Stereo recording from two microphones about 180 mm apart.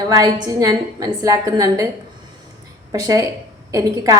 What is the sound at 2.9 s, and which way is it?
A woman's voice, 20° right (ahead or behind).